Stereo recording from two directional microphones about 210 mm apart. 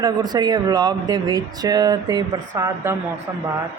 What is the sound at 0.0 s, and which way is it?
Speech, 20° right (ahead or behind).